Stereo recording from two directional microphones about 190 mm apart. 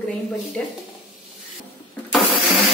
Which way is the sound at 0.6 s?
5° left (ahead or behind).